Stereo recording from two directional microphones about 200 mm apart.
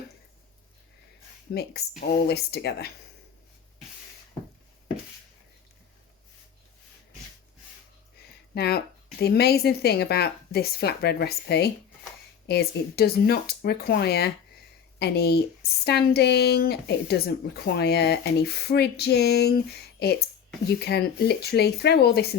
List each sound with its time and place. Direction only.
1.5 s speech: 50° left (ahead or behind)
8.5 s speech: 55° left (ahead or behind)
17.7 s a sound: 55° left (ahead or behind)
20.7 s speech: 55° left (ahead or behind)